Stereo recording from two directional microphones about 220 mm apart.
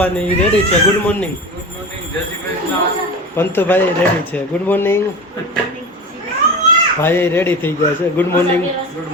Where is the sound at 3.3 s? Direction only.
10° left (ahead or behind).